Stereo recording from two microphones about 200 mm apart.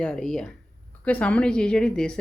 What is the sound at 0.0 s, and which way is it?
A woman's voice, 5° left (ahead or behind).